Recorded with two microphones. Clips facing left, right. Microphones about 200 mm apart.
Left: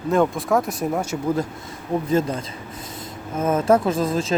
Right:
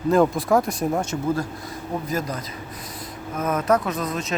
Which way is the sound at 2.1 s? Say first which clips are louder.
Left 6 dB; 30° left (ahead or behind).